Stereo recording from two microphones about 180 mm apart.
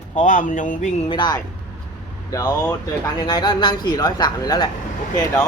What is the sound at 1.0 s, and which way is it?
Speech, 25° left (ahead or behind).